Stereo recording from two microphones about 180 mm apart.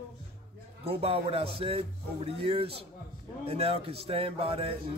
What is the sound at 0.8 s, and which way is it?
Speech, 30° right (ahead or behind).